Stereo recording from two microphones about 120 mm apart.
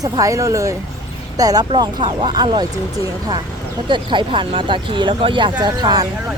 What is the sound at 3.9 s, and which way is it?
Speech, 40° right (ahead or behind).